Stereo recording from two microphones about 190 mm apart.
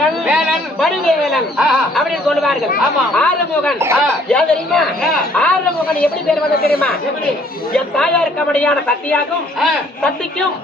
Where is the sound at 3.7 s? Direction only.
15° right (ahead or behind).